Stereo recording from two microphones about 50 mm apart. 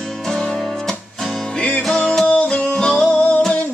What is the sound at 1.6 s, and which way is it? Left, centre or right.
Music, left.